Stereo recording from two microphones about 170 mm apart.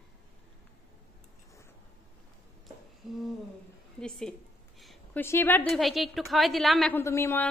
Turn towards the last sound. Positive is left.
turn(degrees=15)  # may be behind; listen again after turning